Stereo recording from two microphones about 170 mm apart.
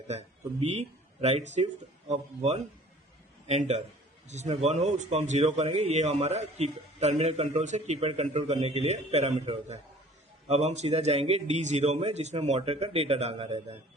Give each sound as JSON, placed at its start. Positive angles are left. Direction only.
{"t": 0.1, "sound": "a man's voice", "side_deg": -40}